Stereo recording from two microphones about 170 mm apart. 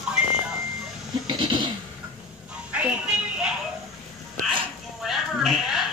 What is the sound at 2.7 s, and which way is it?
Vehicle, 5° right (ahead or behind).